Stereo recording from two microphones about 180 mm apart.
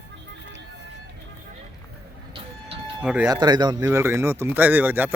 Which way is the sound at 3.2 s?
20° right (ahead or behind).